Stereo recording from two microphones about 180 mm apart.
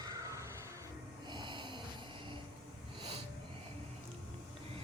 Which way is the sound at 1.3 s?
25° right (ahead or behind).